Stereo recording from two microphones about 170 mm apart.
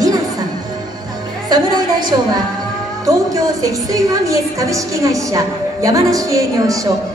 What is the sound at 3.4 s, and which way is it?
A woman's voice, 20° right (ahead or behind).